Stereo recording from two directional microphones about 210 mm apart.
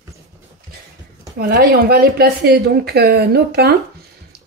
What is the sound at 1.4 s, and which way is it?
Speech, 45° right (ahead or behind).